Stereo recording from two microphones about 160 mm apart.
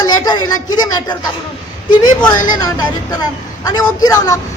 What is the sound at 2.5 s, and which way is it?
A woman's voice, 25° left (ahead or behind).